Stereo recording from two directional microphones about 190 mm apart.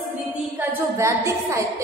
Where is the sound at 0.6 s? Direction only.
15° right (ahead or behind).